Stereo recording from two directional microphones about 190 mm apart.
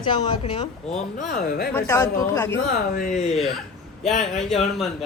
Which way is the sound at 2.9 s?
45° left (ahead or behind).